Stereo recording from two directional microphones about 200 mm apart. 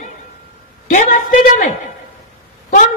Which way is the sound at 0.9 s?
40° left (ahead or behind).